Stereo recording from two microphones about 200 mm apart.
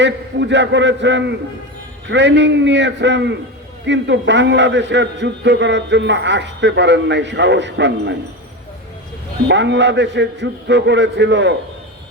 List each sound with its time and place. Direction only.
0.0 s a man's voice: 60° right (ahead or behind)
9.5 s a man's voice: 60° right (ahead or behind)